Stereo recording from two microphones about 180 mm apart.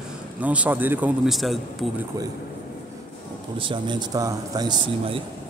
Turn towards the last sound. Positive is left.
turn(degrees=-25)  # may be behind; listen again after turning